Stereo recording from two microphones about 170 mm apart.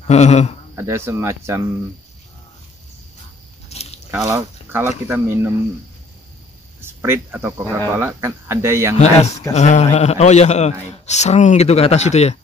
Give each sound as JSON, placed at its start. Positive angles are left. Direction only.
{"t": 0.0, "sound": "speech", "side_deg": 40}
{"t": 0.7, "sound": "speech", "side_deg": -15}
{"t": 3.6, "sound": "a sound", "side_deg": 40}
{"t": 4.1, "sound": "speech", "side_deg": -20}
{"t": 6.8, "sound": "speech", "side_deg": -15}
{"t": 8.9, "sound": "a man's voice", "side_deg": 40}